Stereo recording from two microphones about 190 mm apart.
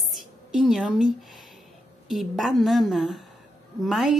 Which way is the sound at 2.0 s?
Centre (ahead or behind).